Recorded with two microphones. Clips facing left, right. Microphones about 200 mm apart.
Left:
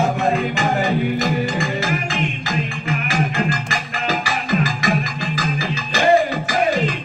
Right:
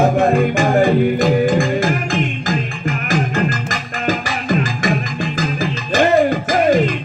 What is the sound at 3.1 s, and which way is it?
Music, 45° right (ahead or behind).